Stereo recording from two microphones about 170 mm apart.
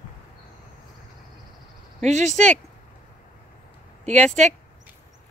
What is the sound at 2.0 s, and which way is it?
Speech, 45° right (ahead or behind).